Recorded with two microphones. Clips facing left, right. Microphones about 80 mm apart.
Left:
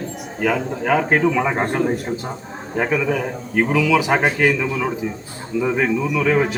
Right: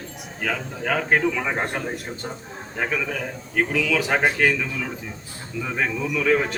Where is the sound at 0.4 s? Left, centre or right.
Centre.